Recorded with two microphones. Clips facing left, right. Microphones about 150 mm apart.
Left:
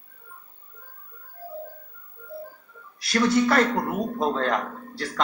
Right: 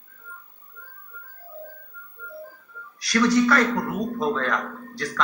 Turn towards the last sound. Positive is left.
turn(degrees=30)  # may be behind; listen again after turning